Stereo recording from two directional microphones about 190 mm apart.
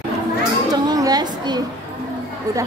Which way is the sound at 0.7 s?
20° right (ahead or behind).